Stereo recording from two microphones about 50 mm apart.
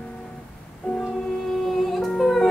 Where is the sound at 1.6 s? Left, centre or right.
Centre.